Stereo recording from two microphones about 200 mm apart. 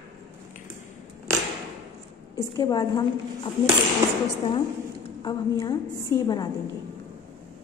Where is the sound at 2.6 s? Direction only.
20° left (ahead or behind).